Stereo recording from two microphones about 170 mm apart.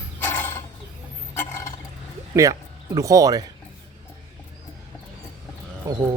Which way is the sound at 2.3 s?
20° right (ahead or behind).